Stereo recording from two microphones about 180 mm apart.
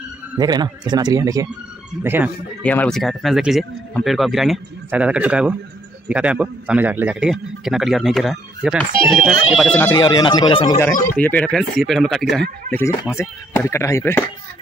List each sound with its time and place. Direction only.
0.4 s a man's voice: 20° right (ahead or behind)
2.6 s speech: 10° left (ahead or behind)
9.8 s speech: 15° left (ahead or behind)
11.1 s speech: 5° left (ahead or behind)
13.1 s speech: 15° left (ahead or behind)